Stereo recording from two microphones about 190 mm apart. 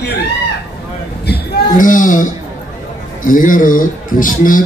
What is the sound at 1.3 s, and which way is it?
Speech, 45° left (ahead or behind).